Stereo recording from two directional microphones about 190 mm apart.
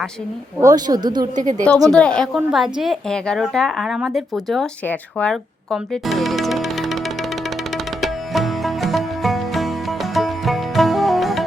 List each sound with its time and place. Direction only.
0.6 s speech: 20° right (ahead or behind)
1.4 s a woman's voice: 40° right (ahead or behind)
1.9 s a woman's voice: 5° left (ahead or behind)
8.0 s music: centre (ahead or behind)